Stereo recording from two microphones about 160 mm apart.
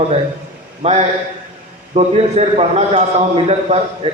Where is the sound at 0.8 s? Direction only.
45° right (ahead or behind).